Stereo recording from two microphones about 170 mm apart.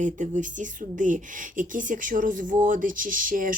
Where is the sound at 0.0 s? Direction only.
50° right (ahead or behind).